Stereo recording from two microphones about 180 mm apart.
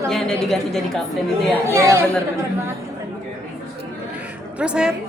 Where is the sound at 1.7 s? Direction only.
15° right (ahead or behind).